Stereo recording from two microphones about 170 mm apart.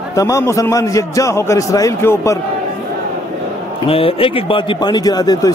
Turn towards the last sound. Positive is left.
turn(degrees=25)  # may be behind; listen again after turning